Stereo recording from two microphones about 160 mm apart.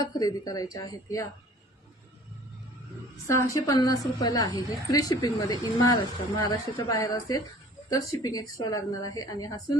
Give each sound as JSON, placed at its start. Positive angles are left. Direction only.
{"t": 0.0, "sound": "a woman's voice", "side_deg": 25}
{"t": 3.2, "sound": "a woman's voice", "side_deg": 20}